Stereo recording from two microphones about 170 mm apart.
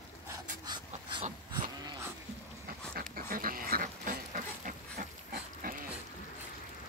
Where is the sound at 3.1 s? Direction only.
55° right (ahead or behind).